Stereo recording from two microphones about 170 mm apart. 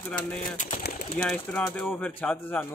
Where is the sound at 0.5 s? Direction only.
50° left (ahead or behind).